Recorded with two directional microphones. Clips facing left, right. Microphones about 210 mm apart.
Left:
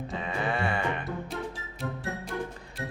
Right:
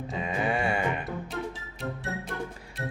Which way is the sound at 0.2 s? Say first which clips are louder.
Right 3 dB; 15° right (ahead or behind).